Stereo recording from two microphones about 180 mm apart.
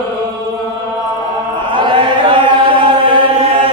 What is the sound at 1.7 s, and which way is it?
Chant, 25° right (ahead or behind).